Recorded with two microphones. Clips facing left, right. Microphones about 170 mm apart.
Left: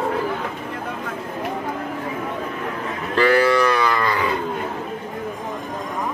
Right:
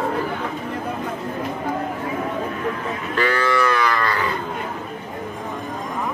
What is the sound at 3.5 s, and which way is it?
Livestock, 20° left (ahead or behind).